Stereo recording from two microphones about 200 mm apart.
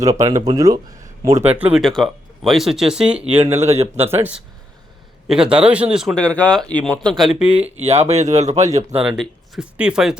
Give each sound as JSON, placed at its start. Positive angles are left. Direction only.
{"t": 0.0, "sound": "speech", "side_deg": -15}
{"t": 7.9, "sound": "speech", "side_deg": -30}
{"t": 9.0, "sound": "speech", "side_deg": -5}